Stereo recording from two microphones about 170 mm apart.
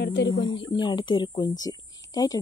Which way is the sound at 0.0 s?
75° left (ahead or behind).